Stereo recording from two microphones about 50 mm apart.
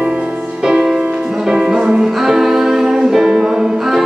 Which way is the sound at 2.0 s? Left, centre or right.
Centre.